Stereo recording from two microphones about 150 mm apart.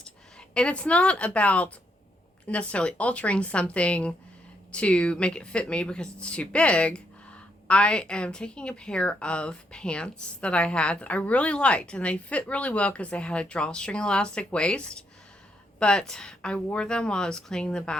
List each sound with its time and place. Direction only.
0.5 s a woman's voice: 5° left (ahead or behind)